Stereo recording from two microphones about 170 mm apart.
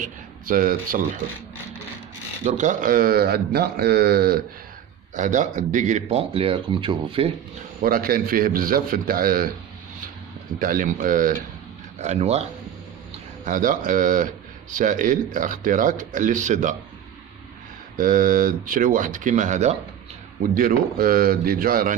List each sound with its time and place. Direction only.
0.0 s a man's voice: 55° right (ahead or behind)
2.4 s speech: 45° right (ahead or behind); by 4.4 s 65° right (ahead or behind)
5.1 s speech: 45° right (ahead or behind)
7.8 s speech: 60° right (ahead or behind)
10.6 s a man's voice: 50° right (ahead or behind)
12.0 s speech: 40° right (ahead or behind)
13.5 s a man's voice: 50° right (ahead or behind)
17.9 s a man's voice: 55° right (ahead or behind)
20.5 s speech: 55° right (ahead or behind)